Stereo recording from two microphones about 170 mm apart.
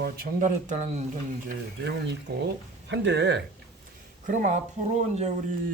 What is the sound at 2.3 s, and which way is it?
Speech, 70° right (ahead or behind).